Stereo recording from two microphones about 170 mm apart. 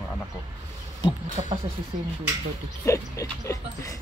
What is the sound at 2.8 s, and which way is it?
Dog, 20° left (ahead or behind).